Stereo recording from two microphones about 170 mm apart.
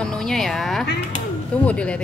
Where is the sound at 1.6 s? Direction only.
5° left (ahead or behind).